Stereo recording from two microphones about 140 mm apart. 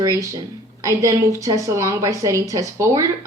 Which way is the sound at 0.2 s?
25° right (ahead or behind).